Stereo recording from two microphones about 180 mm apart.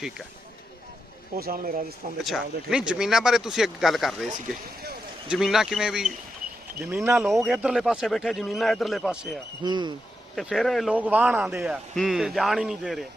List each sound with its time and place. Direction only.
1.4 s speech: 55° right (ahead or behind)
2.2 s a man's voice: centre (ahead or behind)
5.3 s a man's voice: 5° right (ahead or behind)
6.7 s speech: 15° right (ahead or behind)
7.1 s a man's voice: centre (ahead or behind)
9.6 s speech: 25° right (ahead or behind)
10.3 s a man's voice: centre (ahead or behind)